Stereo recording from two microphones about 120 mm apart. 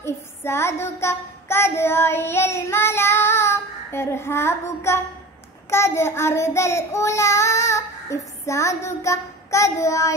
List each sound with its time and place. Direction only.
0.0 s child singing: 20° left (ahead or behind)